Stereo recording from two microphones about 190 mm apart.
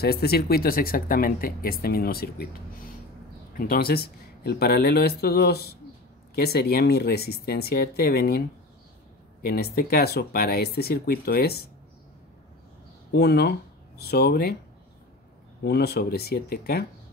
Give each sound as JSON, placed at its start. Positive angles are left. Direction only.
{"t": 0.0, "sound": "speech", "side_deg": 55}
{"t": 3.5, "sound": "speech", "side_deg": 50}
{"t": 9.4, "sound": "speech", "side_deg": 55}
{"t": 13.1, "sound": "speech", "side_deg": 55}
{"t": 15.6, "sound": "speech", "side_deg": 55}